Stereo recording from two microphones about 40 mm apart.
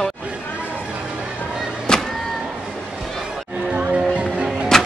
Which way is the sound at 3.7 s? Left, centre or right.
Right.